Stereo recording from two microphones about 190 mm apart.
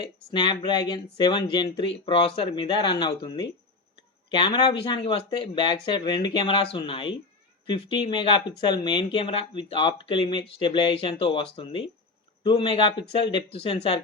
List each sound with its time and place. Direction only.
0.3 s speech: 25° left (ahead or behind)